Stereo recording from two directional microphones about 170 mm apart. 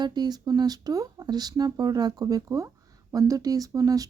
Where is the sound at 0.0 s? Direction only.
25° right (ahead or behind).